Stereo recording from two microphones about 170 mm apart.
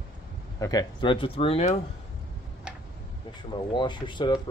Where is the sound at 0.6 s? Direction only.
20° left (ahead or behind).